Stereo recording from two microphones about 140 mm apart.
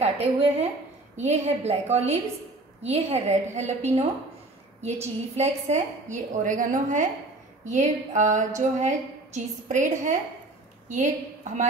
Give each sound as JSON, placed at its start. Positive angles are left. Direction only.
{"t": 0.0, "sound": "a woman's voice", "side_deg": -45}
{"t": 5.0, "sound": "a woman's voice", "side_deg": -50}